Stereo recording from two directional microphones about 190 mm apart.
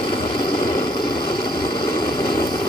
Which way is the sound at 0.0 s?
25° left (ahead or behind).